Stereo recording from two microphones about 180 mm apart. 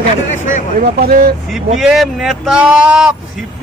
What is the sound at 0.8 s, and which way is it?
Speech, 55° right (ahead or behind).